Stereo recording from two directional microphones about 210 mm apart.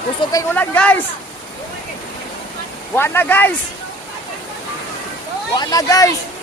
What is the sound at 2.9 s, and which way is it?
Speech, 10° left (ahead or behind).